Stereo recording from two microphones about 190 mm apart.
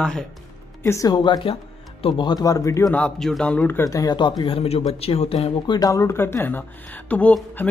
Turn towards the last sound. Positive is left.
turn(degrees=10)  # may be behind; listen again after turning